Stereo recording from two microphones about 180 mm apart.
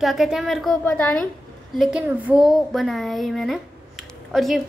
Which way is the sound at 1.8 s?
5° right (ahead or behind).